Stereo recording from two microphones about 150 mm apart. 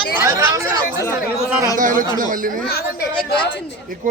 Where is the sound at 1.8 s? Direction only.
60° right (ahead or behind).